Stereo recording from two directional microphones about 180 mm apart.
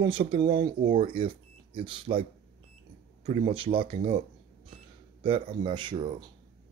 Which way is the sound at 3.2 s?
30° right (ahead or behind).